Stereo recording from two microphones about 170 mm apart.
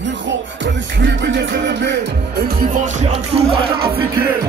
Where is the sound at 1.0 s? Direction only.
90° right.